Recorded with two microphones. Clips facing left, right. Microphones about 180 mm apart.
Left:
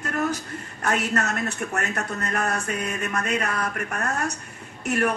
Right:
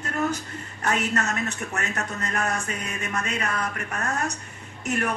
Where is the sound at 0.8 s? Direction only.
65° left (ahead or behind).